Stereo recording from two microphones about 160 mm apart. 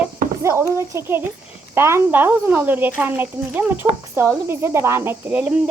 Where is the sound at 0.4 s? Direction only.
15° right (ahead or behind).